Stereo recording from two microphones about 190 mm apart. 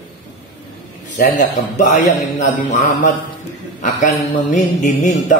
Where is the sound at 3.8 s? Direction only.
40° left (ahead or behind).